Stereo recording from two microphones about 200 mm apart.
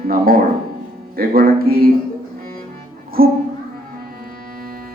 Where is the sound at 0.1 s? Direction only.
45° right (ahead or behind).